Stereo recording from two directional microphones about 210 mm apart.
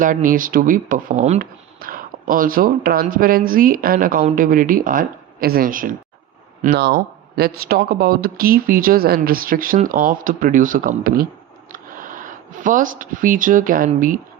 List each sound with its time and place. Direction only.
0.0 s speech: 40° right (ahead or behind)